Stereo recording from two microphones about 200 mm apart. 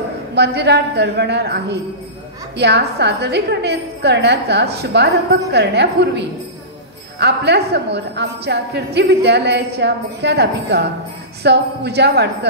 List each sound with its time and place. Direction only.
0.3 s a woman's voice: 55° right (ahead or behind)